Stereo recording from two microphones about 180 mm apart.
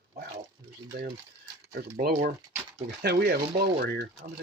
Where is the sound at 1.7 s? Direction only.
60° right (ahead or behind).